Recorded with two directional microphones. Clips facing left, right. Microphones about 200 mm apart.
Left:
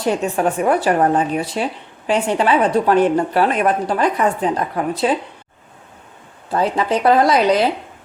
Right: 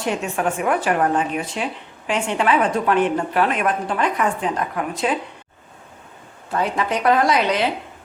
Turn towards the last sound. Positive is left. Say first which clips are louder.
# left 4 dB
turn(degrees=35)  # may be behind; listen again after turning